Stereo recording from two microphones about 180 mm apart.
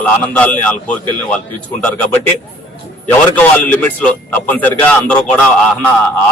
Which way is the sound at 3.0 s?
10° left (ahead or behind).